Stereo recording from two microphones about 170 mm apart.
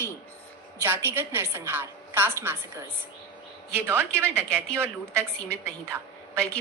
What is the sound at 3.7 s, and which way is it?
A woman's voice, 15° right (ahead or behind).